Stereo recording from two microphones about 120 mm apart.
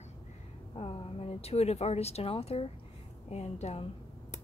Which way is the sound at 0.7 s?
45° left (ahead or behind).